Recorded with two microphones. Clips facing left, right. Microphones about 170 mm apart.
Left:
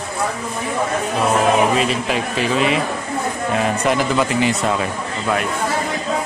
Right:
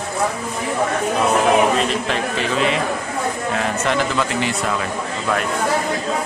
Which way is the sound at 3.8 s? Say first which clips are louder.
Left 2 dB; 15° left (ahead or behind).